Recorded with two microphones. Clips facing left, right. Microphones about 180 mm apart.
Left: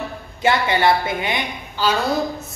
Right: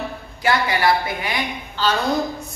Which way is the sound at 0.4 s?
25° left (ahead or behind).